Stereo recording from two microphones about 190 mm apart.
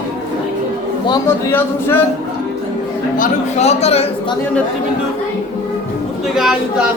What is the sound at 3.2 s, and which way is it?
Speech, 35° left (ahead or behind).